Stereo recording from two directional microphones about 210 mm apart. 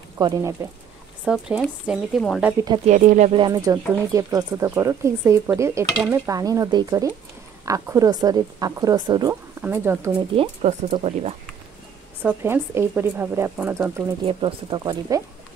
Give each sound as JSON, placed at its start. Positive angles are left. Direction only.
{"t": 0.2, "sound": "speech", "side_deg": -15}
{"t": 1.2, "sound": "speech", "side_deg": 0}
{"t": 2.6, "sound": "speech", "side_deg": -20}
{"t": 2.9, "sound": "speech", "side_deg": -35}
{"t": 3.4, "sound": "speech", "side_deg": -15}
{"t": 10.3, "sound": "speech", "side_deg": -30}
{"t": 12.2, "sound": "speech", "side_deg": -10}
{"t": 14.2, "sound": "speech", "side_deg": -25}